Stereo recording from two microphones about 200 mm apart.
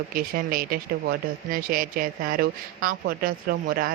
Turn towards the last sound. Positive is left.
turn(degrees=-45)  # may be behind; listen again after turning